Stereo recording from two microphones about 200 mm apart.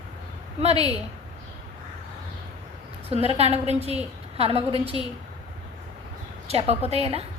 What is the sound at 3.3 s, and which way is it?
A woman's voice, 30° right (ahead or behind).